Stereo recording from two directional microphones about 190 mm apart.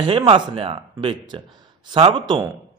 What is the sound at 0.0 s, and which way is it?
Speech, 25° right (ahead or behind).